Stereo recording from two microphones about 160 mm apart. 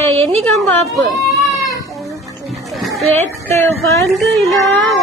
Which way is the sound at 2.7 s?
Centre (ahead or behind).